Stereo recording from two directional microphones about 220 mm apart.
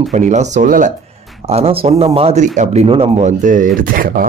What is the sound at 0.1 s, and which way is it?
Speech, 30° right (ahead or behind).